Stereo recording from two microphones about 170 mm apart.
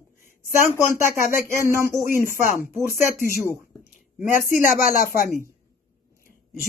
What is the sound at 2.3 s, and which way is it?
Speech, 55° left (ahead or behind).